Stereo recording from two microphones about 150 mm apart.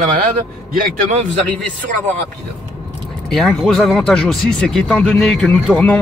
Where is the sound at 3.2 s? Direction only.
Centre (ahead or behind).